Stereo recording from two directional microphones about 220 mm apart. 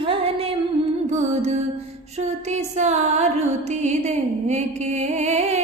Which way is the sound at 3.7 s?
30° right (ahead or behind).